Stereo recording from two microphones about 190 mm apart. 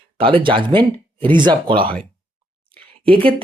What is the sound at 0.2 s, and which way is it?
Speech, 25° right (ahead or behind).